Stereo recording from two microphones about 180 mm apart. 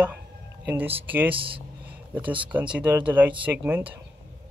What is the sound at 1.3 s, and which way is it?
Speech, 30° right (ahead or behind).